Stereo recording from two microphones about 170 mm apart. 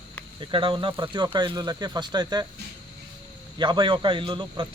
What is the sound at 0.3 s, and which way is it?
Speech, 30° right (ahead or behind).